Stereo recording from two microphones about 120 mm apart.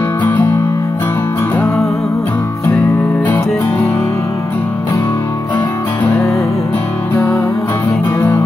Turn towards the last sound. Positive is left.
turn(degrees=20)  # may be behind; listen again after turning